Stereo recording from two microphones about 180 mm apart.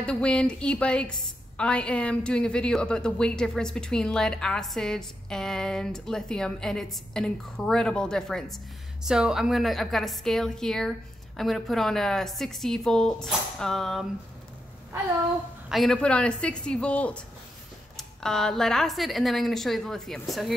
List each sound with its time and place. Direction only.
0.0 s a woman's voice: 5° left (ahead or behind)
15.7 s a woman's voice: centre (ahead or behind)